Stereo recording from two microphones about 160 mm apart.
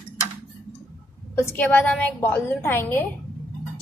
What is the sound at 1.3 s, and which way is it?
A woman's voice, 15° left (ahead or behind).